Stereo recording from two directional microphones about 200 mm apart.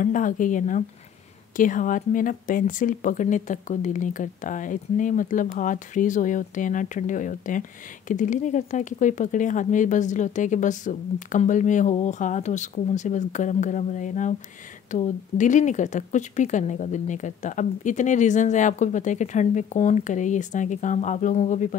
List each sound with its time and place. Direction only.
0.0 s speech: 40° left (ahead or behind)